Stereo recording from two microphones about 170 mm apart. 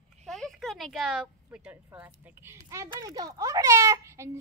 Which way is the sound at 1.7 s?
10° right (ahead or behind).